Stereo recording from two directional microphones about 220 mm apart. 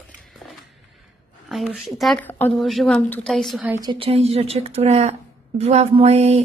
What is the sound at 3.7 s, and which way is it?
A woman's voice, 20° right (ahead or behind).